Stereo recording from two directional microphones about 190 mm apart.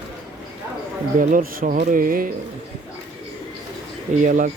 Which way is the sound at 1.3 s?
50° right (ahead or behind).